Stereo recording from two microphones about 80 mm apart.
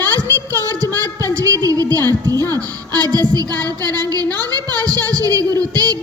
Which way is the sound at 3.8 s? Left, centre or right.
Right.